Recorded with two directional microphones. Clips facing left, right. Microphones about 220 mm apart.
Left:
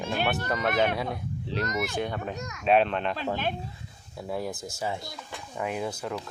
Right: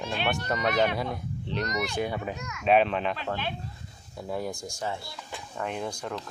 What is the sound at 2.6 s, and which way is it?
Speech, centre (ahead or behind).